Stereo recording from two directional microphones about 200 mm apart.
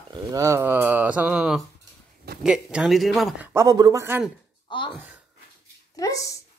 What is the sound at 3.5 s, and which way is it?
Speech, 15° right (ahead or behind).